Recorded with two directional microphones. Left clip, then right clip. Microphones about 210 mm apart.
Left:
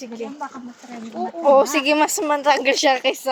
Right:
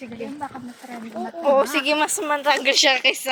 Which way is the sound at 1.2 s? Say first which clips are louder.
Left 4 dB; 30° left (ahead or behind).